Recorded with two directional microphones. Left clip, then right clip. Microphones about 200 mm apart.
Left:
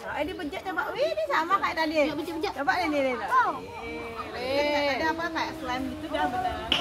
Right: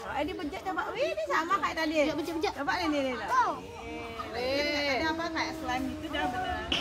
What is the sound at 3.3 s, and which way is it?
Speech, 10° right (ahead or behind).